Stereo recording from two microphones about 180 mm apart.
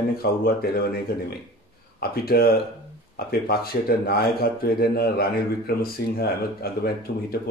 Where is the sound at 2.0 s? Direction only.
60° left (ahead or behind).